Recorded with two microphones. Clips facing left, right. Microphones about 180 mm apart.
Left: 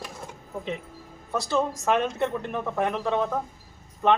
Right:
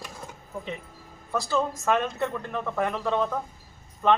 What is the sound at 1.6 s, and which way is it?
Speech, 15° left (ahead or behind).